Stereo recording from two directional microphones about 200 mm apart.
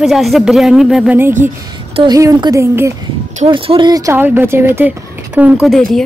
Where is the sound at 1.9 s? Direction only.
20° right (ahead or behind).